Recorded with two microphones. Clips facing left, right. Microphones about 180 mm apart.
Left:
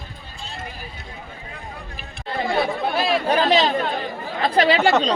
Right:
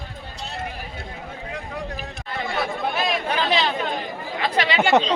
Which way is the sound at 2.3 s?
30° left (ahead or behind).